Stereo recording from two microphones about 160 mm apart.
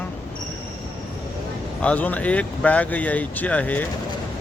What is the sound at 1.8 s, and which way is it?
Speech, 10° left (ahead or behind).